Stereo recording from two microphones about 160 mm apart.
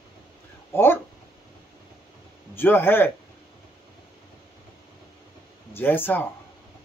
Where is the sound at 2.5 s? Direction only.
15° left (ahead or behind).